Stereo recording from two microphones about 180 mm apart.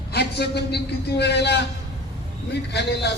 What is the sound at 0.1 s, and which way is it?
A man's voice, 65° left (ahead or behind).